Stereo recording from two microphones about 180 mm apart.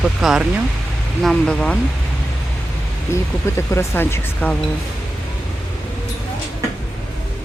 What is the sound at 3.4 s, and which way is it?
Speech, 15° left (ahead or behind).